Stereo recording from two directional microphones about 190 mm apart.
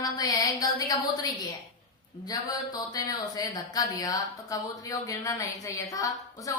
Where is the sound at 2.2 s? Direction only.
20° left (ahead or behind).